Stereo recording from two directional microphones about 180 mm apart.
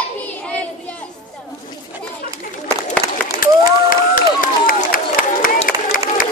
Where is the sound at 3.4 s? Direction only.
50° left (ahead or behind).